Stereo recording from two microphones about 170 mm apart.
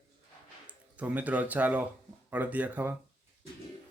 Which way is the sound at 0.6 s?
10° right (ahead or behind).